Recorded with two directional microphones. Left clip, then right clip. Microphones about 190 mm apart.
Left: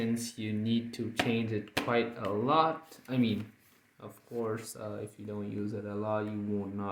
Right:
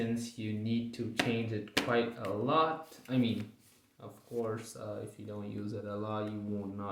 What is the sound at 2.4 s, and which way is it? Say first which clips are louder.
Speech: left 2 dB; 50° left (ahead or behind).